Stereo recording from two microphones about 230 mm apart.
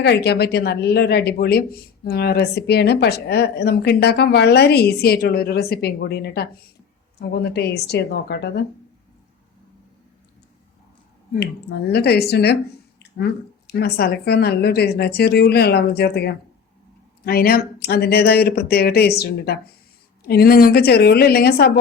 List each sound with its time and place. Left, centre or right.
0.0 s a woman's voice: left
11.9 s a woman's voice: left